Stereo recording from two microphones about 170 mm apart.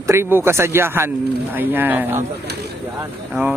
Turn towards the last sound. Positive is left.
turn(degrees=-10)  # may be behind; listen again after turning